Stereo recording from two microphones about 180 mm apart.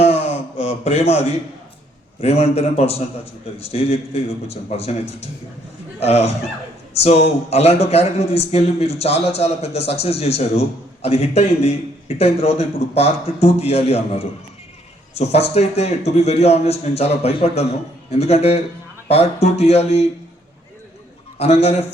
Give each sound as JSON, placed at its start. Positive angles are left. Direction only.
{"t": 0.0, "sound": "a sound", "side_deg": 35}
{"t": 2.2, "sound": "a man's voice", "side_deg": 35}
{"t": 21.3, "sound": "a man's voice", "side_deg": 35}